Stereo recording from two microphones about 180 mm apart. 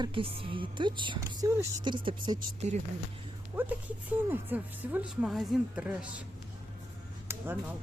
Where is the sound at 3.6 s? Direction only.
10° right (ahead or behind).